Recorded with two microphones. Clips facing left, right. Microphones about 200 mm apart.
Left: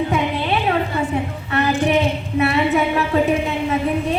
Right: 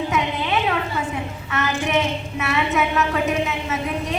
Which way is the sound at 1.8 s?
35° left (ahead or behind).